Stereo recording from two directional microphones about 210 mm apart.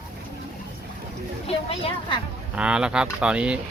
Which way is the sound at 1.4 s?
30° left (ahead or behind).